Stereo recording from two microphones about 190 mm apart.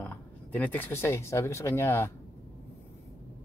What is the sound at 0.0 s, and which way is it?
Speech, 10° left (ahead or behind).